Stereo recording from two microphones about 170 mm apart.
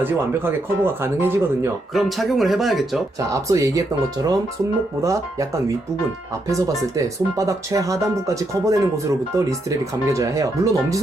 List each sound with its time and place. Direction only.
0.0 s speech: 15° right (ahead or behind)
1.9 s speech: centre (ahead or behind)
3.3 s speech: 20° right (ahead or behind)